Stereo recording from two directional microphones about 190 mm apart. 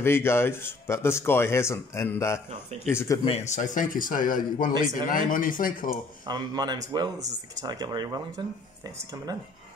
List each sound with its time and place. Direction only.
0.0 s speech: 15° left (ahead or behind)
3.3 s a man's voice: 35° left (ahead or behind)
6.2 s speech: 20° right (ahead or behind)